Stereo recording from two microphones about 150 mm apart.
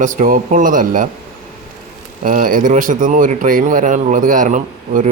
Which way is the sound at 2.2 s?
60° right (ahead or behind).